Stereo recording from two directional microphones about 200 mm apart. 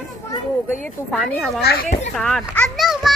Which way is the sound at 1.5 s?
50° left (ahead or behind).